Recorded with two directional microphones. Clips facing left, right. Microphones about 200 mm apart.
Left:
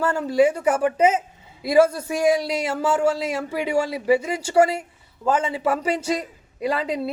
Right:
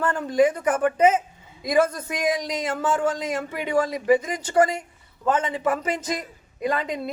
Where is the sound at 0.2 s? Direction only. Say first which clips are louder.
Left 1 dB; 30° left (ahead or behind).